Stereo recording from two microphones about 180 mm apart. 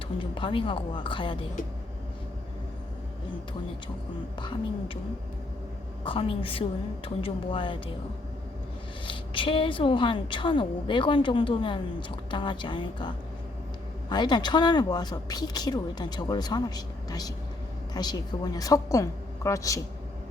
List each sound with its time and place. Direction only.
0.2 s a woman's voice: 30° left (ahead or behind)
6.1 s a woman's voice: 30° left (ahead or behind)
9.0 s a woman's voice: 30° left (ahead or behind)